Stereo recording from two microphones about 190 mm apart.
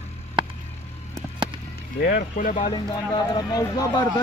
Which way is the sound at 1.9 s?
50° left (ahead or behind).